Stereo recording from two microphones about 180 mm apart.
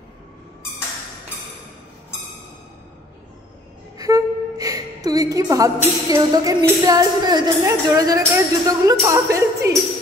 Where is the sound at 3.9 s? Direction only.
20° right (ahead or behind).